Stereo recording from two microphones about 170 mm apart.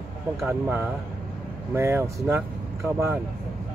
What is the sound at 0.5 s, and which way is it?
Speech, 15° right (ahead or behind).